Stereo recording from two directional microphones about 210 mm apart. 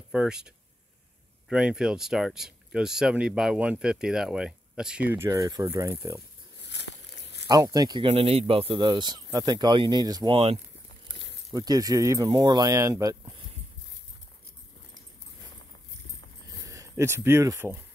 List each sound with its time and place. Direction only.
0.1 s speech: 5° right (ahead or behind)
1.5 s speech: 5° right (ahead or behind)
6.6 s a sound: 55° left (ahead or behind)
7.4 s speech: 20° right (ahead or behind)
16.5 s speech: 15° right (ahead or behind)